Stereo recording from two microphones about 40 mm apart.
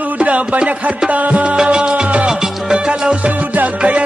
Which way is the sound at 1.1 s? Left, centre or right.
Right.